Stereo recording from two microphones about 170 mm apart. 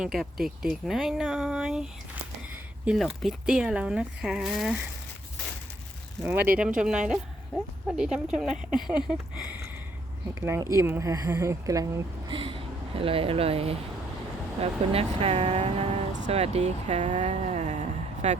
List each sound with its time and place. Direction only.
0.0 s speech: centre (ahead or behind)
6.2 s speech: 10° right (ahead or behind)
12.3 s speech: 30° right (ahead or behind)